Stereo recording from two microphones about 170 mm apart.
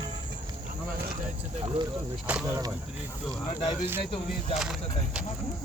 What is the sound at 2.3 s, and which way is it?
Speech, 10° right (ahead or behind).